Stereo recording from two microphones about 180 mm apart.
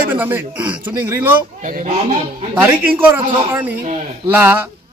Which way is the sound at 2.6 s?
10° right (ahead or behind).